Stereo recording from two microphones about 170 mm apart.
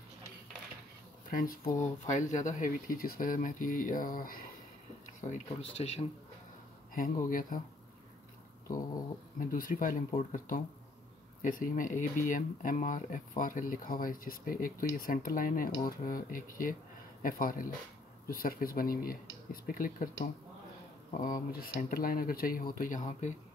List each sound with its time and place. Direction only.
1.3 s speech: 55° left (ahead or behind)
5.2 s speech: 40° left (ahead or behind)
6.9 s speech: 55° left (ahead or behind)
8.7 s speech: 55° left (ahead or behind)
21.1 s speech: 55° left (ahead or behind)